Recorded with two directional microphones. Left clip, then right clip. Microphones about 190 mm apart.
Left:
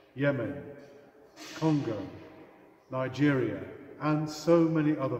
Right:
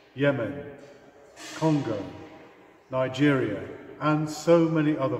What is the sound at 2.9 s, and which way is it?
A man's voice, 15° right (ahead or behind).